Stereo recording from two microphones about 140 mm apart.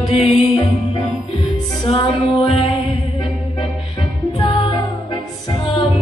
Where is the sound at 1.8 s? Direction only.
40° left (ahead or behind).